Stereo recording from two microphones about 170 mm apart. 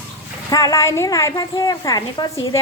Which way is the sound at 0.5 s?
20° left (ahead or behind).